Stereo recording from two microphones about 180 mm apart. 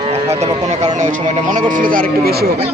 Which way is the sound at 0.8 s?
45° right (ahead or behind).